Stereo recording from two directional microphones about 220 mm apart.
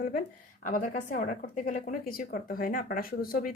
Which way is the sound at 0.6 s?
40° left (ahead or behind).